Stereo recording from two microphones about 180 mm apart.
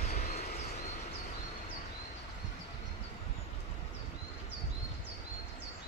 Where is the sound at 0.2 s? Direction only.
40° left (ahead or behind).